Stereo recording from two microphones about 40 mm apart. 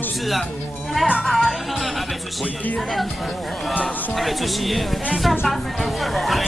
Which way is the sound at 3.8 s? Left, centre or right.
Centre.